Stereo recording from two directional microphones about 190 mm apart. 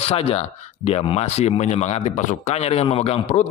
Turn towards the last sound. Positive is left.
turn(degrees=35)  # may be behind; listen again after turning